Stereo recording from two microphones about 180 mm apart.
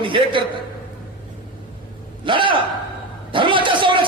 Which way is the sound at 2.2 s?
25° right (ahead or behind).